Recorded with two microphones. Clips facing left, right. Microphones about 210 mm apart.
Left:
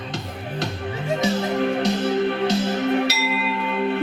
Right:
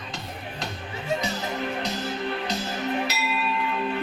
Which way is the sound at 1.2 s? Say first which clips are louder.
Left 8 dB; 75° left (ahead or behind).